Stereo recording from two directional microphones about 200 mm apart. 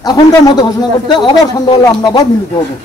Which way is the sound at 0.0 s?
20° left (ahead or behind).